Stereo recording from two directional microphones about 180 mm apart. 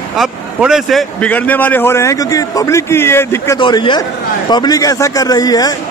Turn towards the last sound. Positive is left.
turn(degrees=20)  # may be behind; listen again after turning